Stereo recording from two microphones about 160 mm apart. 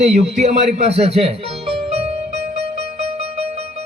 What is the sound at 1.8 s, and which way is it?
Music, 40° right (ahead or behind).